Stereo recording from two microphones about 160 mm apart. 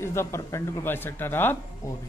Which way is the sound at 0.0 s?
15° left (ahead or behind).